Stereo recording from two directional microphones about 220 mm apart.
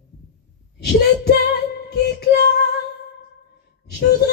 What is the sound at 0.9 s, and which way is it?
Female singing, 50° left (ahead or behind).